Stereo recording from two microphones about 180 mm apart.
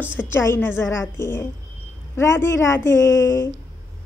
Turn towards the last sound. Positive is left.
turn(degrees=20)  # may be behind; listen again after turning